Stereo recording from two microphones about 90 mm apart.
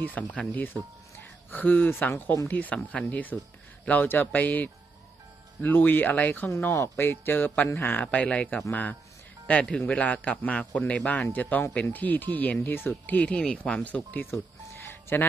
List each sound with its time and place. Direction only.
0.0 s speech: 15° left (ahead or behind)
8.0 s speech: 15° left (ahead or behind)